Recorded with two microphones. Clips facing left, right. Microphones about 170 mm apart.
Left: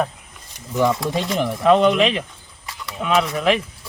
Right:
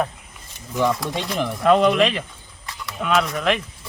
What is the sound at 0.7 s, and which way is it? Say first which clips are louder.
Speech: left 2 dB; 5° left (ahead or behind).